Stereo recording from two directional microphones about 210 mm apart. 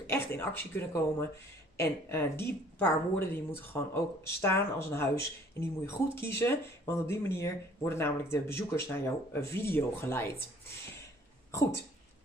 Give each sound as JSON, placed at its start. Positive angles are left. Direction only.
{"t": 0.4, "sound": "a woman's voice", "side_deg": 10}